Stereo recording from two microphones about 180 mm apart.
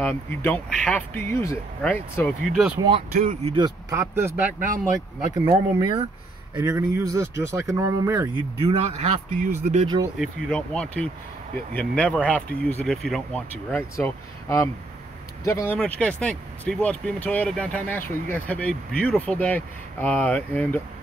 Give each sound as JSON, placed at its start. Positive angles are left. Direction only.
{"t": 0.0, "sound": "speech", "side_deg": 10}
{"t": 1.8, "sound": "speech", "side_deg": 5}
{"t": 3.2, "sound": "a man's voice", "side_deg": -40}
{"t": 3.5, "sound": "speech", "side_deg": -20}
{"t": 5.3, "sound": "speech", "side_deg": -25}
{"t": 8.5, "sound": "a man's voice", "side_deg": -35}
{"t": 10.1, "sound": "speech", "side_deg": 0}